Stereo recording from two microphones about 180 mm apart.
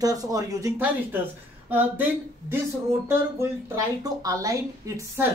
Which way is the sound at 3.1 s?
15° right (ahead or behind).